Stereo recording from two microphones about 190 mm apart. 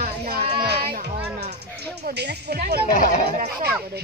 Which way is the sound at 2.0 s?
60° right (ahead or behind).